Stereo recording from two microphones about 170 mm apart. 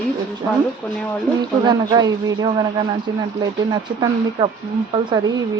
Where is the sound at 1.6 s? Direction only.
25° right (ahead or behind).